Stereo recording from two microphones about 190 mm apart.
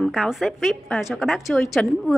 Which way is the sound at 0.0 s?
Centre (ahead or behind).